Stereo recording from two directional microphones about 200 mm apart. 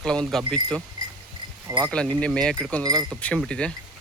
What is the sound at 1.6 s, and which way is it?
Insect, 15° right (ahead or behind).